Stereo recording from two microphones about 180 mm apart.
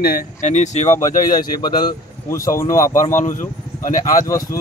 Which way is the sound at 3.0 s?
45° left (ahead or behind).